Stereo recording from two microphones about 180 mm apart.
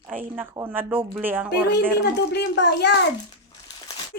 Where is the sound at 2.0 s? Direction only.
70° left (ahead or behind).